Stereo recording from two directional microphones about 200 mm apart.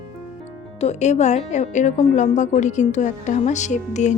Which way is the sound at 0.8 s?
35° left (ahead or behind).